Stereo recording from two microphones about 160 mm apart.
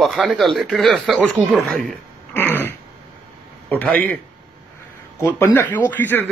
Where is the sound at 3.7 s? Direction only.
10° left (ahead or behind).